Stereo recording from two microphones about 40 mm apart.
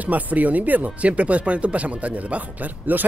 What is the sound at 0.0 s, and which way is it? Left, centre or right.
Speech, right.